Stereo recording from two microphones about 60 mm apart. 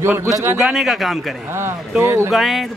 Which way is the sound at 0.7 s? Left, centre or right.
Centre.